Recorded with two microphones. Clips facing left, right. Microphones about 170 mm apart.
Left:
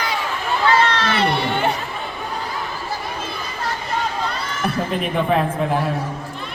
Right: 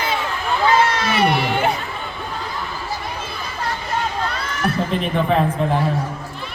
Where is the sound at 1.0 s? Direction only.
15° right (ahead or behind).